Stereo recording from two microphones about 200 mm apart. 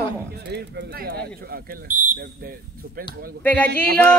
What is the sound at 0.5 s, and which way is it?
Speech, 55° right (ahead or behind).